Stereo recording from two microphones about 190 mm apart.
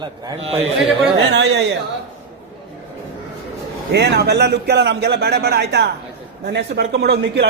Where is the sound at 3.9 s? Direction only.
60° right (ahead or behind).